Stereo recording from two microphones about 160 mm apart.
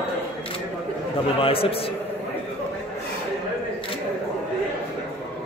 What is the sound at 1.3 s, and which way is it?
Speech, 35° left (ahead or behind).